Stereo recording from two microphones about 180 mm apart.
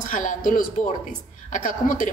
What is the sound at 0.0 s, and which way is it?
A woman's voice, 45° left (ahead or behind).